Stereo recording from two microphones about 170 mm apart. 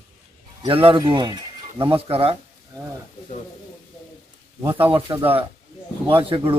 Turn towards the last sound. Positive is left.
turn(degrees=-30)  # may be behind; listen again after turning